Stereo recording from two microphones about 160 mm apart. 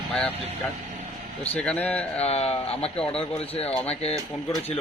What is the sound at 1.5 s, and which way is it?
Speech, 10° left (ahead or behind).